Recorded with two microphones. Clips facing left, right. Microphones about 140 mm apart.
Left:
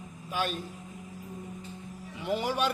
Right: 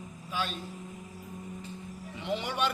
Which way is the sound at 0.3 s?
50° left (ahead or behind).